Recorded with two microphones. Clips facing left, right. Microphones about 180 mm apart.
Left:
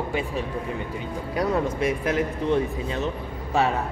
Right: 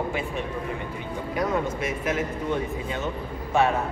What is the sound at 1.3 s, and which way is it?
Speech, 30° left (ahead or behind).